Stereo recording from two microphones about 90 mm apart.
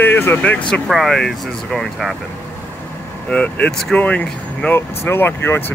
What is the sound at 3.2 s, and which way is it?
Speech, 15° left (ahead or behind).